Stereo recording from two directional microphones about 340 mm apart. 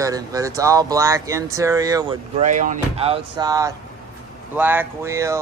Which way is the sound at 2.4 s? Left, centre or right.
Right.